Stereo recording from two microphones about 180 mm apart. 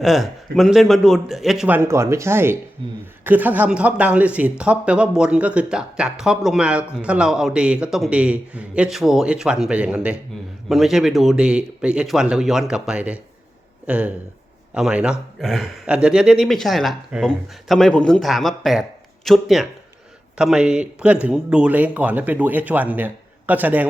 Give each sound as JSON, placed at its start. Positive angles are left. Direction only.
{"t": 0.0, "sound": "speech", "side_deg": 0}
{"t": 2.8, "sound": "speech", "side_deg": -30}
{"t": 3.2, "sound": "speech", "side_deg": -10}